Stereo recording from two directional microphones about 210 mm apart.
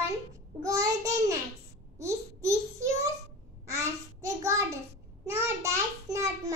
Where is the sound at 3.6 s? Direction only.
15° right (ahead or behind).